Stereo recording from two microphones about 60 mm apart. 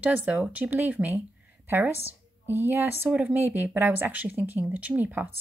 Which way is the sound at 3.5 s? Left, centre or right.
Right.